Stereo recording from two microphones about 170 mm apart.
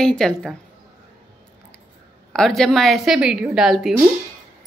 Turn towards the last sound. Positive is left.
turn(degrees=0)  # may be behind; listen again after turning